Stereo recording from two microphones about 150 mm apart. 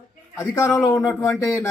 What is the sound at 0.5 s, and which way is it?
A man's voice, 15° left (ahead or behind).